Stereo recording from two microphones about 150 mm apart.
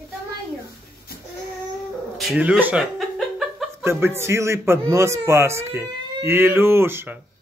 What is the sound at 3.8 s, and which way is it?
Speech, 15° right (ahead or behind).